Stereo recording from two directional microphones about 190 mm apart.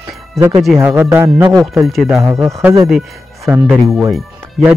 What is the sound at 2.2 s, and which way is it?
Speech, 15° right (ahead or behind).